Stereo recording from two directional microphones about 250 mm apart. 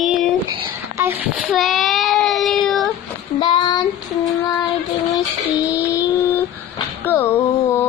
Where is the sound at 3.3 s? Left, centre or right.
Centre.